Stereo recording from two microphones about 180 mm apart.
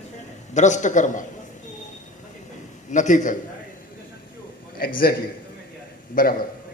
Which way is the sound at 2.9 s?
45° left (ahead or behind).